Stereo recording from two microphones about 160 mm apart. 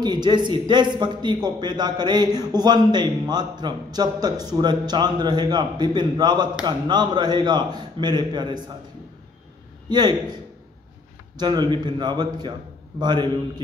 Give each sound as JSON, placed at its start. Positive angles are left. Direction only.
{"t": 0.0, "sound": "a man's voice", "side_deg": -25}
{"t": 9.8, "sound": "a man's voice", "side_deg": -25}
{"t": 11.3, "sound": "a man's voice", "side_deg": -25}